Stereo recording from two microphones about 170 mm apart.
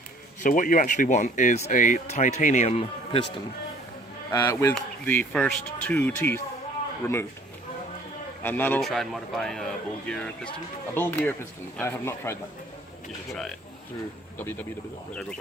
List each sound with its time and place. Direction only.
0.4 s speech: 50° left (ahead or behind); by 3.2 s 35° left (ahead or behind)
4.3 s speech: 15° left (ahead or behind)
8.4 s speech: 10° left (ahead or behind)
8.8 s speech: centre (ahead or behind)
13.3 s speech: 5° left (ahead or behind)